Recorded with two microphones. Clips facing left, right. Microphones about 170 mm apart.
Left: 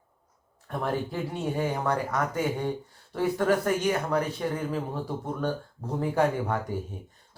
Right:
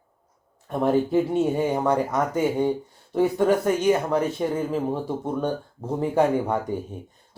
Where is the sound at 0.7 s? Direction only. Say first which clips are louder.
Right 9 dB; 20° right (ahead or behind).